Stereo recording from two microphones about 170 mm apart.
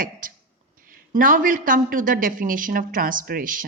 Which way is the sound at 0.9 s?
55° right (ahead or behind).